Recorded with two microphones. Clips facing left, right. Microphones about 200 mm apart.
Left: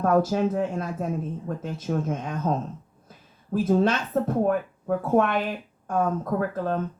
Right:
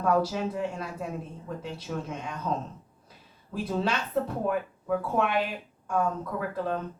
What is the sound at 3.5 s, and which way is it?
A woman's voice, 45° left (ahead or behind).